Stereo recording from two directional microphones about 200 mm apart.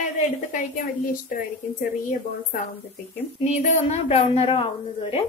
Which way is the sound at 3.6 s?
30° left (ahead or behind).